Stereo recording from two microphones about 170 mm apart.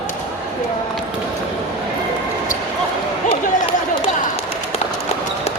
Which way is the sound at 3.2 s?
35° left (ahead or behind).